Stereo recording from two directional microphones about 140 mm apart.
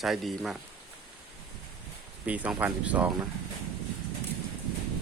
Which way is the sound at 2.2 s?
10° right (ahead or behind).